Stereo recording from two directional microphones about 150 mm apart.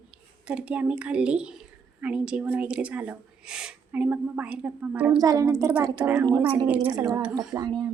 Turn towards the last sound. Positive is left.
turn(degrees=-25)  # may be behind; listen again after turning